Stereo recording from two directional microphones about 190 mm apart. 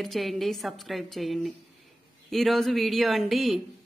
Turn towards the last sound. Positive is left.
turn(degrees=0)  # may be behind; listen again after turning